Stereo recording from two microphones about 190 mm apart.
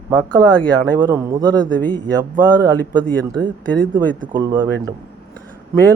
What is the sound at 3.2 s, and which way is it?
A man's voice, 20° right (ahead or behind).